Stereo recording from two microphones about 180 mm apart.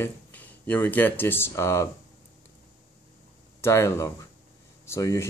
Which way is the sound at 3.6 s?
15° left (ahead or behind).